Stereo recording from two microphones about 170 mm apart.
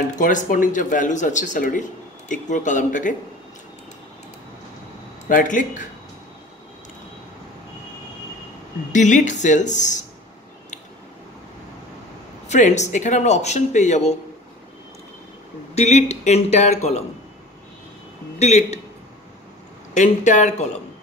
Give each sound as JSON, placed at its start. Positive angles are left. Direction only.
{"t": 0.2, "sound": "speech", "side_deg": 50}
{"t": 5.3, "sound": "speech", "side_deg": 50}
{"t": 8.9, "sound": "speech", "side_deg": 45}
{"t": 12.4, "sound": "speech", "side_deg": 45}
{"t": 15.7, "sound": "speech", "side_deg": 40}
{"t": 18.4, "sound": "speech", "side_deg": 40}
{"t": 19.9, "sound": "speech", "side_deg": 45}